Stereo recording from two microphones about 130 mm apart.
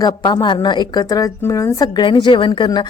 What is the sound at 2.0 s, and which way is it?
Speech, 35° left (ahead or behind).